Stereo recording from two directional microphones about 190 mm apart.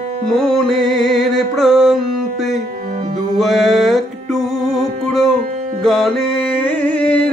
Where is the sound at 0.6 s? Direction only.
Centre (ahead or behind).